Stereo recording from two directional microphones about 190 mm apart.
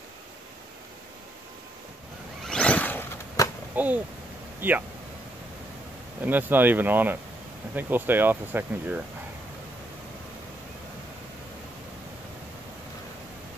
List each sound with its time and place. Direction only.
2.4 s vehicle: 5° left (ahead or behind)
3.7 s speech: 10° right (ahead or behind)
6.2 s speech: 10° right (ahead or behind)